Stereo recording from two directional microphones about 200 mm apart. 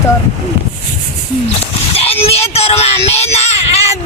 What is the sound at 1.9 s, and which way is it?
Speech, 30° left (ahead or behind).